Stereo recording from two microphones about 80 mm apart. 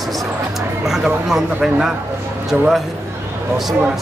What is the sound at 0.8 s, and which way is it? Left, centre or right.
Speech, centre.